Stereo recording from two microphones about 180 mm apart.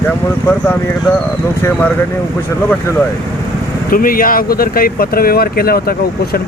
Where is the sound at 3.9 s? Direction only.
55° left (ahead or behind).